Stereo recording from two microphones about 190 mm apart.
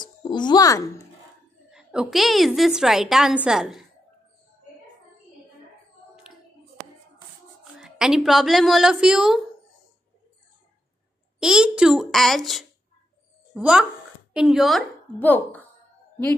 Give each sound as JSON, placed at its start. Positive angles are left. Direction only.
{"t": 0.0, "sound": "a child's voice", "side_deg": 25}
{"t": 1.7, "sound": "a woman's voice", "side_deg": -5}
{"t": 7.8, "sound": "a woman's voice", "side_deg": -5}
{"t": 11.3, "sound": "a woman's voice", "side_deg": -5}